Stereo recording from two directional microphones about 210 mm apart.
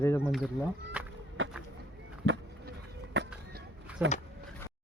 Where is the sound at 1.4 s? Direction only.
70° right (ahead or behind).